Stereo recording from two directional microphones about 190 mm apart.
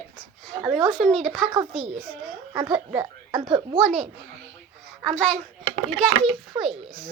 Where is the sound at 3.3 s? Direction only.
25° right (ahead or behind).